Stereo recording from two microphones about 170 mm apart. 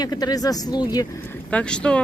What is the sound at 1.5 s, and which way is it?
Speech, 5° left (ahead or behind).